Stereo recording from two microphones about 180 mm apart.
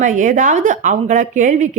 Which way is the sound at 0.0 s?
45° right (ahead or behind).